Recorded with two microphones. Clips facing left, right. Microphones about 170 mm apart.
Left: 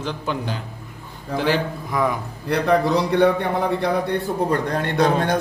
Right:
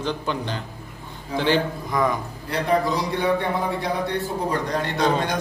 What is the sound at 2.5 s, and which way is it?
Speech, 65° left (ahead or behind).